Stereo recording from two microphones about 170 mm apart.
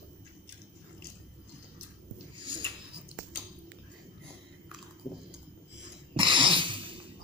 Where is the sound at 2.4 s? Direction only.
30° right (ahead or behind).